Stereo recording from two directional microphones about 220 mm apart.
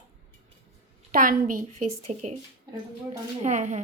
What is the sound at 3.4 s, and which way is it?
Speech, 35° right (ahead or behind).